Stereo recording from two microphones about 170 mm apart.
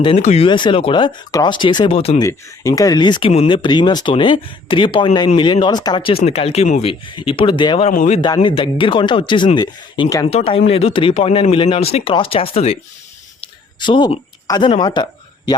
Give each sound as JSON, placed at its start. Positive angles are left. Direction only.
{"t": 0.0, "sound": "speech", "side_deg": 35}
{"t": 2.2, "sound": "speech", "side_deg": 20}
{"t": 7.2, "sound": "speech", "side_deg": 30}
{"t": 7.9, "sound": "speech", "side_deg": 40}
{"t": 8.2, "sound": "speech", "side_deg": 25}
{"t": 10.2, "sound": "speech", "side_deg": 35}
{"t": 13.4, "sound": "a sound", "side_deg": 30}
{"t": 14.4, "sound": "speech", "side_deg": 25}